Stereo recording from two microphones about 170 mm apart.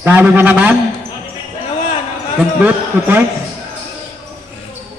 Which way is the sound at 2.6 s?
10° right (ahead or behind).